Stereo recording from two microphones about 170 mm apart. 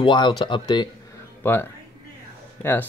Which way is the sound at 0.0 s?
25° left (ahead or behind).